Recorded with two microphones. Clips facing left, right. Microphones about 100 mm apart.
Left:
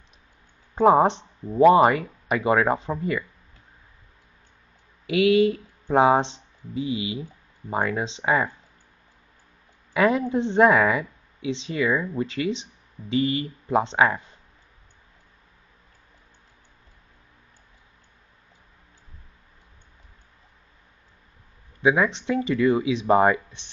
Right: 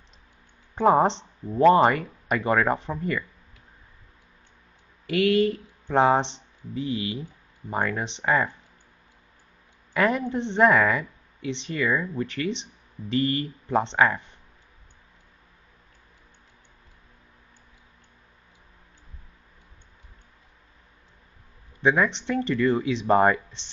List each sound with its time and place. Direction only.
0.7 s speech: 10° left (ahead or behind)
5.1 s speech: 10° left (ahead or behind)
9.9 s speech: 15° left (ahead or behind)
21.8 s speech: 10° left (ahead or behind)